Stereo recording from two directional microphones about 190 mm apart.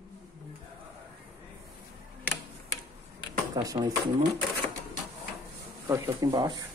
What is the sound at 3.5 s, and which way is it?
Speech, 20° right (ahead or behind).